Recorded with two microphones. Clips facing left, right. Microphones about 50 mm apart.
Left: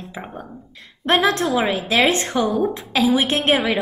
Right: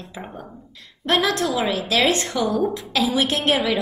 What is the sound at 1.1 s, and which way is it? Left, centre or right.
A woman's voice, left.